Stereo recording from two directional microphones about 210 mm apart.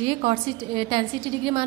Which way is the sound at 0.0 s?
25° right (ahead or behind).